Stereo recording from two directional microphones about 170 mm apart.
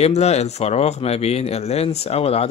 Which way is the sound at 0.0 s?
40° left (ahead or behind).